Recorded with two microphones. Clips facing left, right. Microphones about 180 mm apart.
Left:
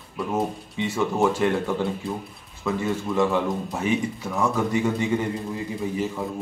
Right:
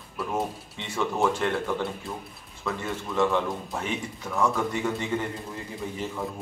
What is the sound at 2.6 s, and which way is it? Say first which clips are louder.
A man's voice: left 6 dB; 10° left (ahead or behind).